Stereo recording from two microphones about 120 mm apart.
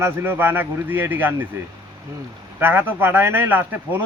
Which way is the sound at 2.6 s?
15° right (ahead or behind).